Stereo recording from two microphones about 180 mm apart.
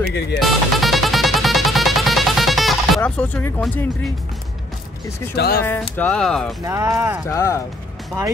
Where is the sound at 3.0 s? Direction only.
10° left (ahead or behind).